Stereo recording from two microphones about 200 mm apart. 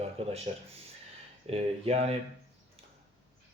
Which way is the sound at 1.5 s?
30° right (ahead or behind).